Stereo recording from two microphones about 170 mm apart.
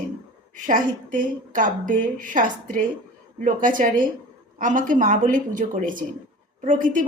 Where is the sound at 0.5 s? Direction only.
50° right (ahead or behind).